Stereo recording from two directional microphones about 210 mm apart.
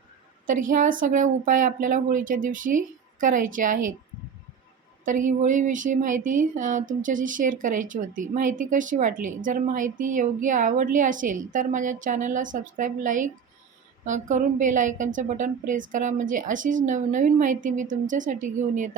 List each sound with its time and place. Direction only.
0.4 s speech: 40° right (ahead or behind)
5.0 s speech: 35° right (ahead or behind)